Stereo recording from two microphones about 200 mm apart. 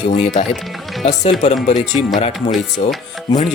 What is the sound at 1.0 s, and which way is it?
Speech, 35° left (ahead or behind).